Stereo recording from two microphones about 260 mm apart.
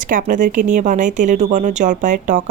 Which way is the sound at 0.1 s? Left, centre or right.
Right.